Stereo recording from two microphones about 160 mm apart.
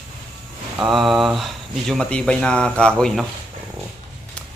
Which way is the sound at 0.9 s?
Centre (ahead or behind).